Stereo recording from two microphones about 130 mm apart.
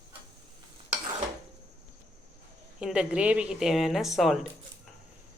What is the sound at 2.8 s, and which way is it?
A woman's voice, 5° right (ahead or behind).